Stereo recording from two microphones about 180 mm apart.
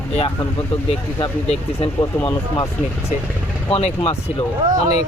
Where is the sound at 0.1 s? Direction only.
35° left (ahead or behind).